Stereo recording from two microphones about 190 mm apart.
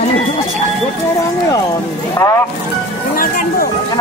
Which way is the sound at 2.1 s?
15° left (ahead or behind).